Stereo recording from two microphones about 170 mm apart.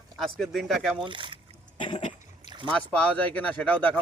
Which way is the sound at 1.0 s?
30° right (ahead or behind).